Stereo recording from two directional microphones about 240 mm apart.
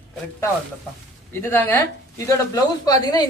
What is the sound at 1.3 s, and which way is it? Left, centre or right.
A woman's voice, centre.